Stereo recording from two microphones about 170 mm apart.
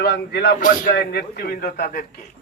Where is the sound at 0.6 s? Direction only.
50° left (ahead or behind).